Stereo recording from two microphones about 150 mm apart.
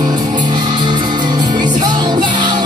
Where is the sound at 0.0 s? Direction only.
30° right (ahead or behind).